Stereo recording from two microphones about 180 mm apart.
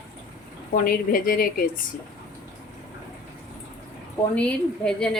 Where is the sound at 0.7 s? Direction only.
55° left (ahead or behind).